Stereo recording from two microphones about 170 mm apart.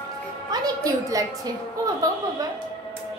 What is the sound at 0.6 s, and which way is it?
Speech, 20° right (ahead or behind).